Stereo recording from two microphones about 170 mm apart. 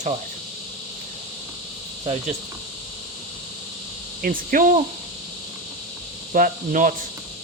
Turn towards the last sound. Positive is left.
turn(degrees=-50)  # may be behind; listen again after turning